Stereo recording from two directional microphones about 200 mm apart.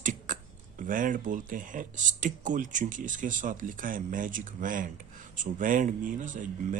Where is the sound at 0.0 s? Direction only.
40° right (ahead or behind).